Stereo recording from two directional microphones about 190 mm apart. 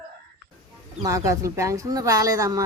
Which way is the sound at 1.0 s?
15° right (ahead or behind).